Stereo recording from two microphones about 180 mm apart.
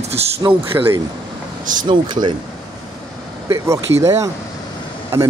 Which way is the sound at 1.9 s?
25° right (ahead or behind).